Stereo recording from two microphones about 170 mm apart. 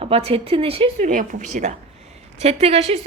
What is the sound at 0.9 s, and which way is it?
A woman's voice, 50° right (ahead or behind).